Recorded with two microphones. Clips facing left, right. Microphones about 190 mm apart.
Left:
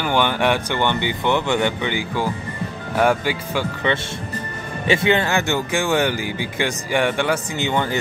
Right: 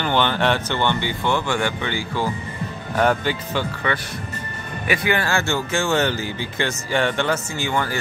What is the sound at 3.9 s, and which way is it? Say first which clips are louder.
Speech: left 3 dB; 25° left (ahead or behind).